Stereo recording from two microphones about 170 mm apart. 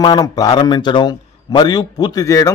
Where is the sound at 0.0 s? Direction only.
25° left (ahead or behind).